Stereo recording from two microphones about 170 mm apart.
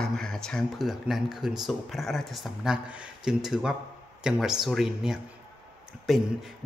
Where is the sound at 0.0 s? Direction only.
5° left (ahead or behind).